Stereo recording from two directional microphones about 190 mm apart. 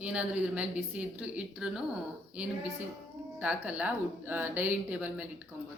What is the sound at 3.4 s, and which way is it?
A woman's voice, 5° right (ahead or behind).